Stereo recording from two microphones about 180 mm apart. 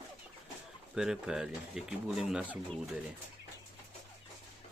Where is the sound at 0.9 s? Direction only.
5° right (ahead or behind).